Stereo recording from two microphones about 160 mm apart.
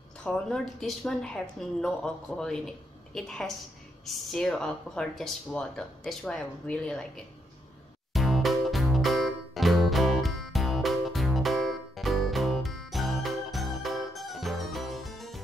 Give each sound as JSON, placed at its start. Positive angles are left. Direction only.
{"t": 0.2, "sound": "speech", "side_deg": 5}
{"t": 8.1, "sound": "music", "side_deg": 0}